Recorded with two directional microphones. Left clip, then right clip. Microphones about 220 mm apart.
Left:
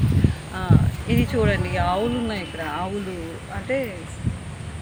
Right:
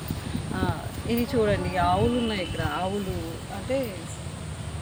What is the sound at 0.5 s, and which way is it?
Speech, centre (ahead or behind).